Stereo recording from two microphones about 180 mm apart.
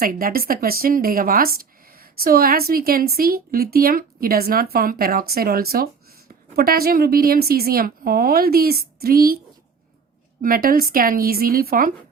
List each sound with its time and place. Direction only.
0.0 s a woman's voice: 55° right (ahead or behind)
10.4 s speech: 55° right (ahead or behind)